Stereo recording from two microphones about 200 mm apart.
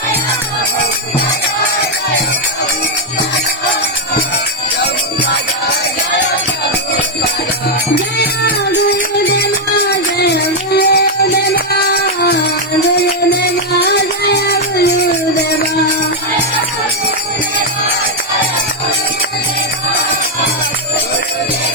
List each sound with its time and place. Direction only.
8.2 s music: 55° left (ahead or behind)
10.2 s music: 55° left (ahead or behind)
13.3 s music: 55° left (ahead or behind)